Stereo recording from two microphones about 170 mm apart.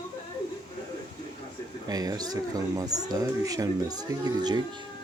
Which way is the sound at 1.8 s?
20° right (ahead or behind).